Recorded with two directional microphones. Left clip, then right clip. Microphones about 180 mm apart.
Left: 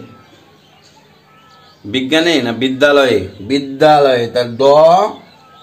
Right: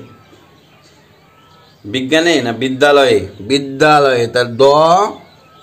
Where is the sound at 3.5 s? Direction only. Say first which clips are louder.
Right 2 dB; 25° right (ahead or behind).